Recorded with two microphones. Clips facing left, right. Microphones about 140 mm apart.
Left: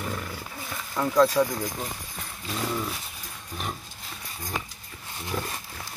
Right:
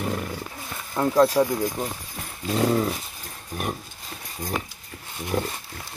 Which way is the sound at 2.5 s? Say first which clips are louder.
Right 8 dB; 50° right (ahead or behind).